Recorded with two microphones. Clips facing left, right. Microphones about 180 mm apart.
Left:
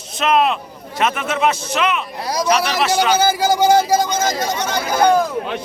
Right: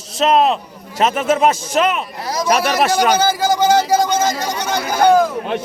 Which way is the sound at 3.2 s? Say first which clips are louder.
Even; 10° left (ahead or behind).